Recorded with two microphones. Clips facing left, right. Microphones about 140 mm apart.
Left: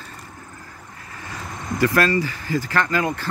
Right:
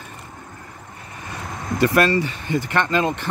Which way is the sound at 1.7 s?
25° right (ahead or behind).